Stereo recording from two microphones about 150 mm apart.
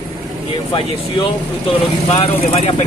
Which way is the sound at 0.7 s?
35° left (ahead or behind).